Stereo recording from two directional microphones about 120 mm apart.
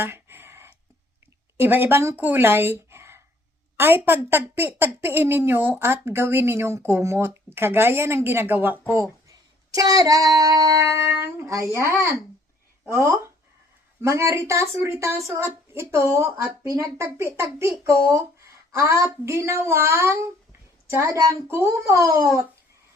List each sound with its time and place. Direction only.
0.0 s a sound: 20° right (ahead or behind)
1.5 s a woman's voice: 20° right (ahead or behind)
9.3 s a woman's voice: 30° right (ahead or behind)